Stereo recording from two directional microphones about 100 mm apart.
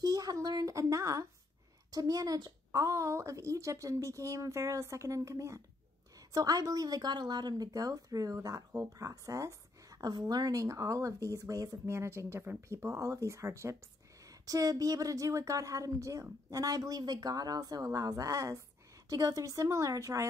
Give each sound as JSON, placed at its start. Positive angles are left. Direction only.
{"t": 0.0, "sound": "a woman's voice", "side_deg": -35}